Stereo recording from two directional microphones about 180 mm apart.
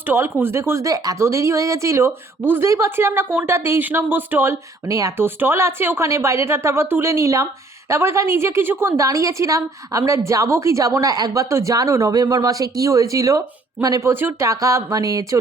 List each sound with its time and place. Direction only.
0.1 s a woman's voice: 10° right (ahead or behind)